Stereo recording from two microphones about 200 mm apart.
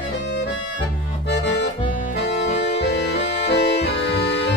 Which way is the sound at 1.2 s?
60° left (ahead or behind).